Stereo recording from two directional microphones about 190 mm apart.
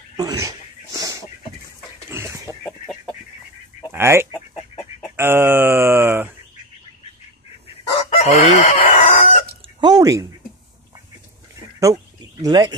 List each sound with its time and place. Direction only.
0.2 s sneeze: 20° right (ahead or behind)
2.0 s chicken: 15° right (ahead or behind)
2.6 s chicken: centre (ahead or behind)
3.9 s speech: 15° right (ahead or behind)
5.1 s a sound: 10° right (ahead or behind)
7.9 s chicken: 35° left (ahead or behind)
9.8 s drip: 20° right (ahead or behind)
11.8 s a sound: 20° right (ahead or behind)